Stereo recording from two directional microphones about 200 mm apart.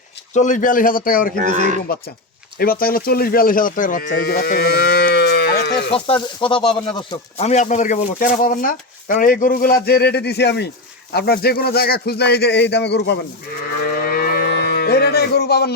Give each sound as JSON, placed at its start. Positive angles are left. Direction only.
{"t": 0.3, "sound": "speech", "side_deg": 40}
{"t": 1.4, "sound": "speech", "side_deg": -35}
{"t": 2.6, "sound": "speech", "side_deg": 45}
{"t": 4.2, "sound": "livestock", "side_deg": 50}
{"t": 5.9, "sound": "speech", "side_deg": 25}
{"t": 7.3, "sound": "speech", "side_deg": 35}
{"t": 14.1, "sound": "cattle", "side_deg": 45}